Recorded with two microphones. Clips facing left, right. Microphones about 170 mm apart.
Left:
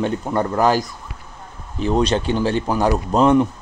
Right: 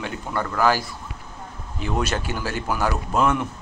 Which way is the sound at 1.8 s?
30° left (ahead or behind).